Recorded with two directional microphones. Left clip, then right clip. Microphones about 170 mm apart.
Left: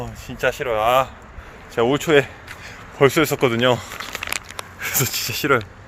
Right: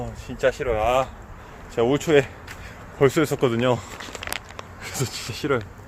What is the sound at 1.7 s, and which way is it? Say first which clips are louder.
Speech: left 2 dB; 15° left (ahead or behind).